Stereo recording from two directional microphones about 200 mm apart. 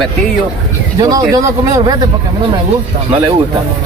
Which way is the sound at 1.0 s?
20° right (ahead or behind).